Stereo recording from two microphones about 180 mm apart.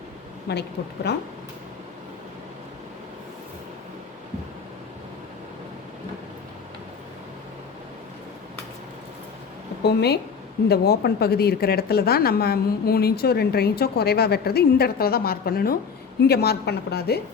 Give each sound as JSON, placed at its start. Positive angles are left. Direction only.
{"t": 0.5, "sound": "speech", "side_deg": 65}
{"t": 9.8, "sound": "a woman's voice", "side_deg": 65}